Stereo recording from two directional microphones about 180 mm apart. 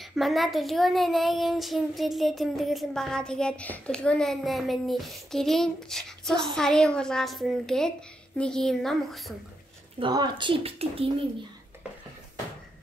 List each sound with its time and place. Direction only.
0.0 s child singing: centre (ahead or behind)
9.9 s speech: 25° right (ahead or behind)